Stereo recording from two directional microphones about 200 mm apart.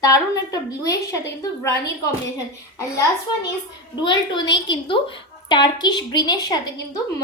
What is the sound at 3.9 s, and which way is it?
Speech, 20° left (ahead or behind).